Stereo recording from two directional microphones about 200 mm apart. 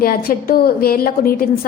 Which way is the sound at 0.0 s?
45° left (ahead or behind).